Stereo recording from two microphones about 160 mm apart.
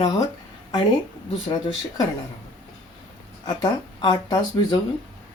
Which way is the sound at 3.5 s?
25° left (ahead or behind).